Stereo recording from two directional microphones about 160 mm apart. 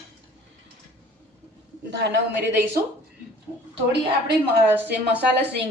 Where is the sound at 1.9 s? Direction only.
90° right.